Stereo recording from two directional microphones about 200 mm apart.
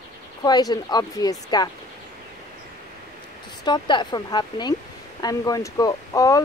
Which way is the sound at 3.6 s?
20° left (ahead or behind).